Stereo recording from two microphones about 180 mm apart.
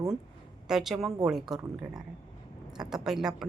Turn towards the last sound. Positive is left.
turn(degrees=-5)  # may be behind; listen again after turning